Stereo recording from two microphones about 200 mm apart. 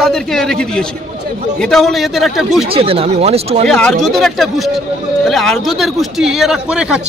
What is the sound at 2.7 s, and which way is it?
Speech, 30° right (ahead or behind).